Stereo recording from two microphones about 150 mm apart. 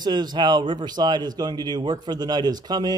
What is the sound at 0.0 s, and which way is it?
Speech, 30° right (ahead or behind).